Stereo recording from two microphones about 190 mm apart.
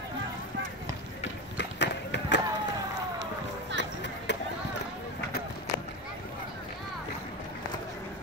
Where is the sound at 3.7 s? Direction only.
65° left (ahead or behind).